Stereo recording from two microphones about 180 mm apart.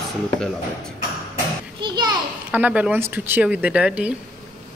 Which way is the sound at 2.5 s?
10° right (ahead or behind).